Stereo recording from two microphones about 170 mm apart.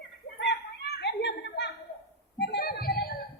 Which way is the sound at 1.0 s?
90° left.